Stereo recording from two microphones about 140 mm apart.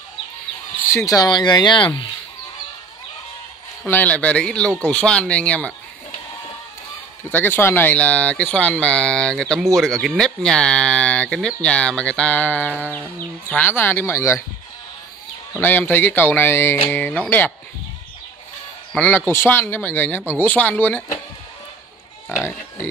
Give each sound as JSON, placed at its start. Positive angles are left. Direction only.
{"t": 0.7, "sound": "speech", "side_deg": 20}
{"t": 3.8, "sound": "speech", "side_deg": 10}
{"t": 7.2, "sound": "speech", "side_deg": 15}
{"t": 15.6, "sound": "speech", "side_deg": 15}
{"t": 18.9, "sound": "speech", "side_deg": 15}
{"t": 22.3, "sound": "speech", "side_deg": 20}